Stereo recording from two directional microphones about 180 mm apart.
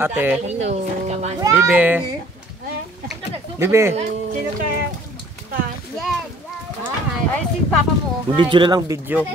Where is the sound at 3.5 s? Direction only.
15° right (ahead or behind).